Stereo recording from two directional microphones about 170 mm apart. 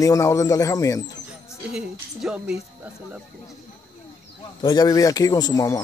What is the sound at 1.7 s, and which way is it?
Speech, 5° right (ahead or behind).